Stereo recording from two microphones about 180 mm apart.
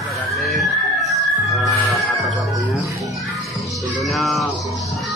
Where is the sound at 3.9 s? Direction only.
Centre (ahead or behind).